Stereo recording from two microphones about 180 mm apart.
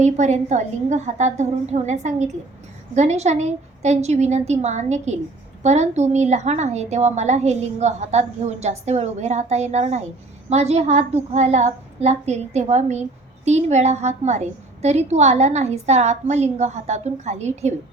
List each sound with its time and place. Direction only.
0.0 s a woman's voice: 40° right (ahead or behind)